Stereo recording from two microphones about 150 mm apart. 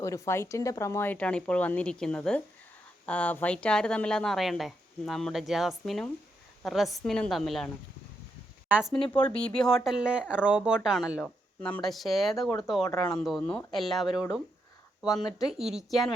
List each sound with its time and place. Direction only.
0.0 s speech: 20° left (ahead or behind); by 7.7 s centre (ahead or behind)
8.7 s speech: 5° right (ahead or behind)
9.0 s speech: 10° left (ahead or behind)
12.9 s speech: 25° left (ahead or behind)
13.1 s speech: 5° left (ahead or behind)